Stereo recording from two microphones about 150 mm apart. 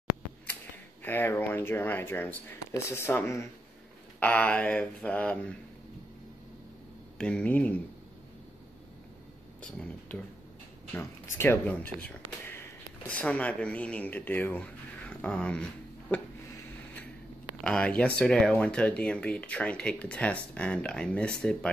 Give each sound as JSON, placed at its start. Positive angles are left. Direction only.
{"t": 1.0, "sound": "speech", "side_deg": 15}
{"t": 7.2, "sound": "speech", "side_deg": 5}
{"t": 9.6, "sound": "speech", "side_deg": 5}
{"t": 17.6, "sound": "speech", "side_deg": 5}